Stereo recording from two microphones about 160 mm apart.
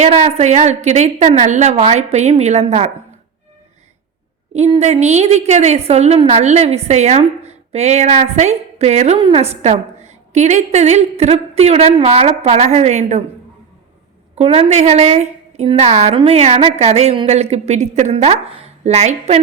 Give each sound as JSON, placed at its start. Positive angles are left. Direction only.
{"t": 0.0, "sound": "a woman's voice", "side_deg": -40}
{"t": 4.5, "sound": "a woman's voice", "side_deg": -45}
{"t": 9.1, "sound": "a woman's voice", "side_deg": -35}
{"t": 14.3, "sound": "a woman's voice", "side_deg": -40}